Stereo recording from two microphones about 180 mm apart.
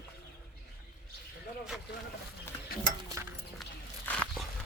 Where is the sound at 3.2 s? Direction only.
15° right (ahead or behind).